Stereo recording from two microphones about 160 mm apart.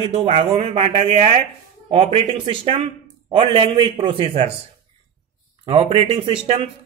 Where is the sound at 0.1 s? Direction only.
40° right (ahead or behind).